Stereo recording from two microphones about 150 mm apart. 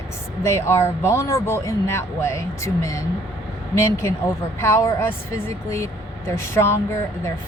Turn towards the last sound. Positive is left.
turn(degrees=15)  # may be behind; listen again after turning